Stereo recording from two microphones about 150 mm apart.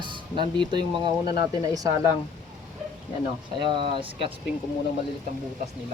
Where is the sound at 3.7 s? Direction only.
35° right (ahead or behind).